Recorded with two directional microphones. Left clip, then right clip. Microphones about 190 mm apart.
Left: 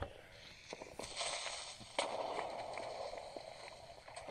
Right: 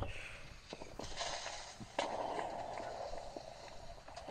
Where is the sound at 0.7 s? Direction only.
45° left (ahead or behind).